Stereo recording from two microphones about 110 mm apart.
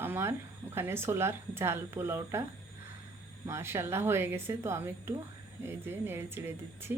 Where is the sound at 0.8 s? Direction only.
20° right (ahead or behind).